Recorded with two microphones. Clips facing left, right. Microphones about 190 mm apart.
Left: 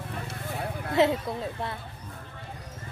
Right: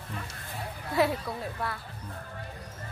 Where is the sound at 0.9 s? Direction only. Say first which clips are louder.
Left 3 dB; 20° left (ahead or behind).